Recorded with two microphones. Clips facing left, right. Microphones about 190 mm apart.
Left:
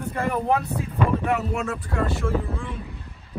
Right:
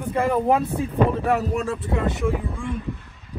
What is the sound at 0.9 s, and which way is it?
Speech, 35° right (ahead or behind).